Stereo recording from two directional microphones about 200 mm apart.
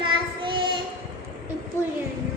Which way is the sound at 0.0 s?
25° right (ahead or behind).